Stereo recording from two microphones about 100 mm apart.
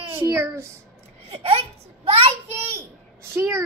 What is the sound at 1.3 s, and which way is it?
A child's voice, 90° right.